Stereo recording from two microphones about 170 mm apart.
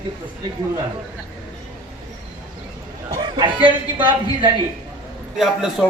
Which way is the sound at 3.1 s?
25° right (ahead or behind).